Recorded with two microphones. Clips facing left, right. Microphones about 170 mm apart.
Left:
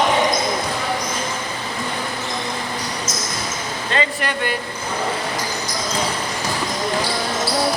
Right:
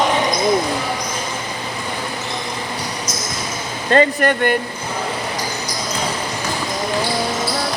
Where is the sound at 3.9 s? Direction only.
50° right (ahead or behind).